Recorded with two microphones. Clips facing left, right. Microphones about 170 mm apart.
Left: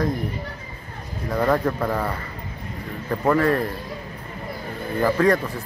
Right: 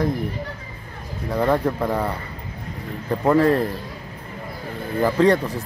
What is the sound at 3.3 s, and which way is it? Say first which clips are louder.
Speech: right 3 dB; 20° right (ahead or behind).